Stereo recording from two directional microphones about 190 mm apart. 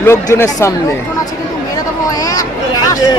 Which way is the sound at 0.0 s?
15° left (ahead or behind).